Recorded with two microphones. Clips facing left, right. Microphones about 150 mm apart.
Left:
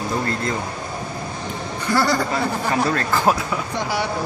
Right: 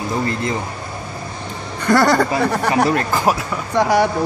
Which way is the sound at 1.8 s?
60° right (ahead or behind).